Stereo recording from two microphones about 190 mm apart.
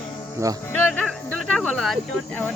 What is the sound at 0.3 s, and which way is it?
Speech, 15° right (ahead or behind).